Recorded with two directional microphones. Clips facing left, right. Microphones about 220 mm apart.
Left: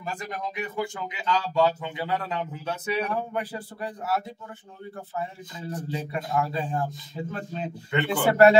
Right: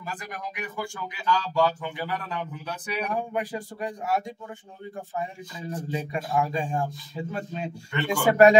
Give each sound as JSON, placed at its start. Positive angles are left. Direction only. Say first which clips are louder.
{"t": 0.0, "sound": "speech", "louder": "left 3 dB", "side_deg": 25}
{"t": 3.0, "sound": "a man's voice", "louder": "even", "side_deg": -15}
{"t": 5.7, "sound": "a man's voice", "louder": "right 1 dB", "side_deg": -10}